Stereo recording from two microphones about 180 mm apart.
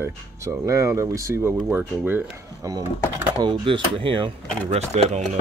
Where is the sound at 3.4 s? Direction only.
30° right (ahead or behind).